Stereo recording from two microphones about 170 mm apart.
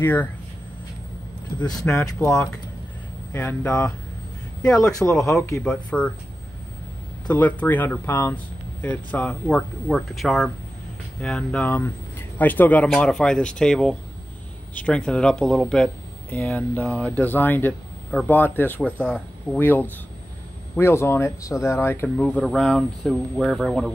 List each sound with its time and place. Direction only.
0.0 s speech: 10° left (ahead or behind)
1.7 s speech: 15° left (ahead or behind)
3.3 s speech: 10° left (ahead or behind)
7.2 s speech: 10° left (ahead or behind)